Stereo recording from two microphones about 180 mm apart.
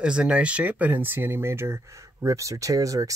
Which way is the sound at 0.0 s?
5° right (ahead or behind).